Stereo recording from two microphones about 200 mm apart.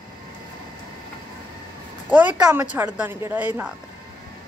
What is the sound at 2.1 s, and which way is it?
A woman's voice, 5° right (ahead or behind).